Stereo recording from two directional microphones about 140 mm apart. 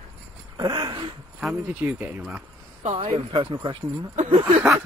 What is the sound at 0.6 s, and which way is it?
Speech, 30° right (ahead or behind).